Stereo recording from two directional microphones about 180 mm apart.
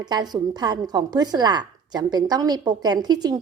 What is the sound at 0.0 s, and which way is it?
A woman's voice, 25° right (ahead or behind).